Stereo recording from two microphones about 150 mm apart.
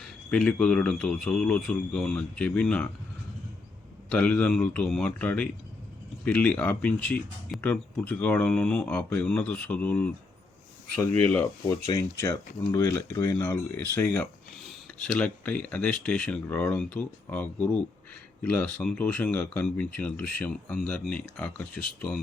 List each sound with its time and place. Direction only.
0.0 s speech: 5° left (ahead or behind)
4.1 s speech: 10° left (ahead or behind)
11.6 s speech: 20° left (ahead or behind); by 21.9 s centre (ahead or behind)